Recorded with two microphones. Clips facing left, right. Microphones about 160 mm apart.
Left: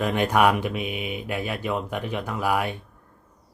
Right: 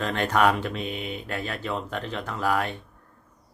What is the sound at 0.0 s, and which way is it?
Speech, 10° left (ahead or behind).